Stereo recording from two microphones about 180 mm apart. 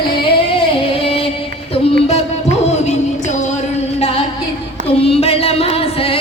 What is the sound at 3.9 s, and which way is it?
Music, 30° left (ahead or behind).